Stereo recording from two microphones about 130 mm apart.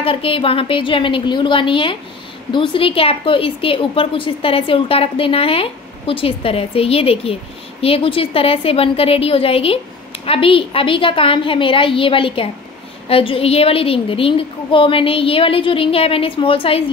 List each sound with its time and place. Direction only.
0.0 s a woman's voice: 45° left (ahead or behind)